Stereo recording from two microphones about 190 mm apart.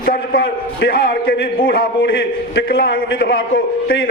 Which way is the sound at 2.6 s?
55° left (ahead or behind).